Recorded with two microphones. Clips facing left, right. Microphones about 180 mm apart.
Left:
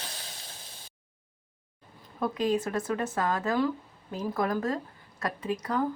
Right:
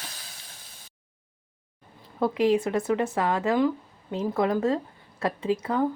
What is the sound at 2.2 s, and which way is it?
Speech, 25° right (ahead or behind).